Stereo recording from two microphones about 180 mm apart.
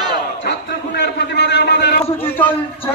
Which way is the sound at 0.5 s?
65° left (ahead or behind).